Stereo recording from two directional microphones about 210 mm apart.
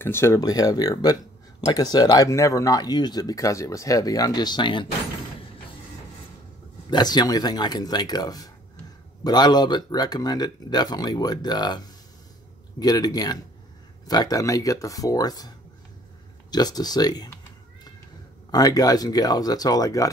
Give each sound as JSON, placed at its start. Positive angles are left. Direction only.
{"t": 0.0, "sound": "speech", "side_deg": 10}
{"t": 6.9, "sound": "speech", "side_deg": 20}
{"t": 18.5, "sound": "speech", "side_deg": 20}